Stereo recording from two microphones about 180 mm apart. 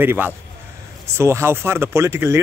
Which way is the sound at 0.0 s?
10° right (ahead or behind).